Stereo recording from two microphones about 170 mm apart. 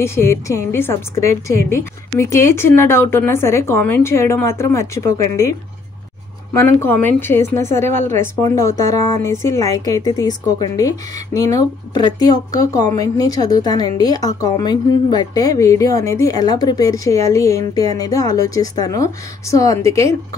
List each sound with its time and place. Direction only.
0.0 s a woman's voice: 15° left (ahead or behind)